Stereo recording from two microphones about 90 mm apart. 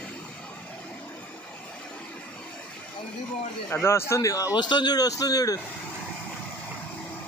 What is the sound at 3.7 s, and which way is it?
Speech, 25° left (ahead or behind).